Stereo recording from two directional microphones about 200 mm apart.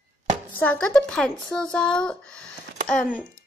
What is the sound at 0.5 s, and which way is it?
Speech, 5° left (ahead or behind).